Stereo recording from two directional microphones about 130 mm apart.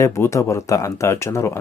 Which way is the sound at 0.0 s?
20° left (ahead or behind).